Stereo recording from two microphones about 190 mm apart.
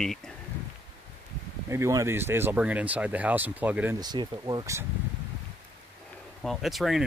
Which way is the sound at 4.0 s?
20° right (ahead or behind).